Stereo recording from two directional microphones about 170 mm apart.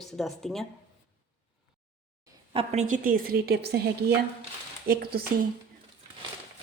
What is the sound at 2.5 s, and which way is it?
A woman's voice, 35° right (ahead or behind).